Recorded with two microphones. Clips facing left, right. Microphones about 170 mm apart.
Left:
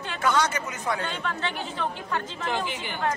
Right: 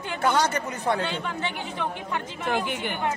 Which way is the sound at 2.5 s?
55° right (ahead or behind).